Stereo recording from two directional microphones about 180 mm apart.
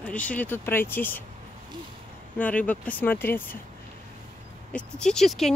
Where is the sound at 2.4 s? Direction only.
10° left (ahead or behind).